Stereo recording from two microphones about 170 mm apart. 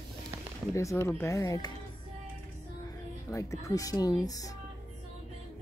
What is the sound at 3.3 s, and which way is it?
Speech, 20° left (ahead or behind).